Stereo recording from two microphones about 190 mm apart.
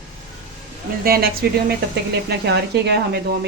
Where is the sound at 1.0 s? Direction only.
50° right (ahead or behind).